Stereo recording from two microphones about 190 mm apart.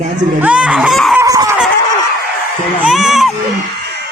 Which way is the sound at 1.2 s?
15° right (ahead or behind).